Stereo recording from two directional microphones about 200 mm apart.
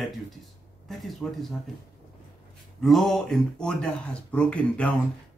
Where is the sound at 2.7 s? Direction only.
Centre (ahead or behind).